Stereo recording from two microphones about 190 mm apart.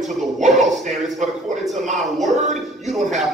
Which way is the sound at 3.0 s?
40° right (ahead or behind).